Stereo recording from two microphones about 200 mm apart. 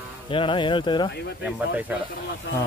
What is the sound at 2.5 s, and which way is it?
Speech, 60° left (ahead or behind).